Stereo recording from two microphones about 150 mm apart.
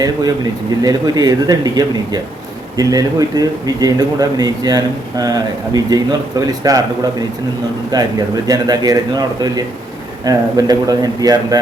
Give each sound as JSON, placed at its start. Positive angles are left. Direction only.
{"t": 0.0, "sound": "a man's voice", "side_deg": -25}
{"t": 7.9, "sound": "a man's voice", "side_deg": -25}